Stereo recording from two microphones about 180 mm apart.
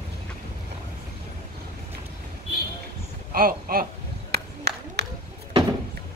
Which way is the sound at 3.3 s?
55° right (ahead or behind).